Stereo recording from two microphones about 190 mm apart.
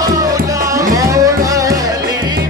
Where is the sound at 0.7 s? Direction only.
15° right (ahead or behind).